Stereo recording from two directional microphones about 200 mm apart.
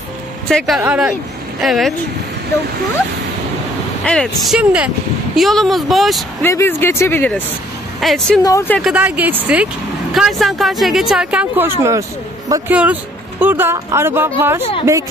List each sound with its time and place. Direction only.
0.5 s speech: 5° left (ahead or behind)
4.0 s speech: 5° left (ahead or behind)
6.4 s speech: 10° left (ahead or behind)
8.4 s speech: 15° left (ahead or behind)
8.8 s speech: 5° right (ahead or behind)
14.6 s speech: 30° left (ahead or behind)